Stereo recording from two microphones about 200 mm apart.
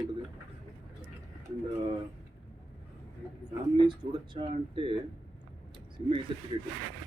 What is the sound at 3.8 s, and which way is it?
Speech, 25° right (ahead or behind).